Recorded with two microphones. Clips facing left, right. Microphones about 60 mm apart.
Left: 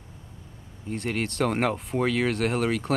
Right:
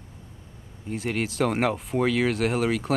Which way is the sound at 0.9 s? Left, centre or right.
Centre.